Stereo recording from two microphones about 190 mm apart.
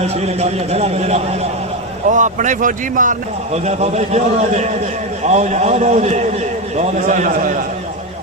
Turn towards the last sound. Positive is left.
turn(degrees=-45)  # may be behind; listen again after turning